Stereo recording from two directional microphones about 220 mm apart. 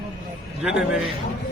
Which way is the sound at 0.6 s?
5° right (ahead or behind).